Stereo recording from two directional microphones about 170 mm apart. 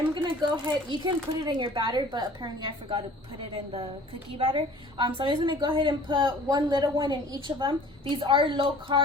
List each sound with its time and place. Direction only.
0.1 s a woman's voice: 25° right (ahead or behind)
4.4 s a woman's voice: 30° right (ahead or behind)